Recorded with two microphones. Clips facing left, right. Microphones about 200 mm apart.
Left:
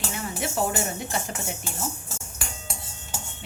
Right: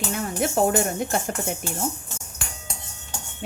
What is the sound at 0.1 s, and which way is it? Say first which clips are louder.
Speech: right 8 dB; 50° right (ahead or behind).